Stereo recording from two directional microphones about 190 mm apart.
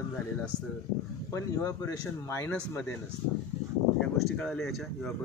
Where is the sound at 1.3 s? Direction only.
15° left (ahead or behind).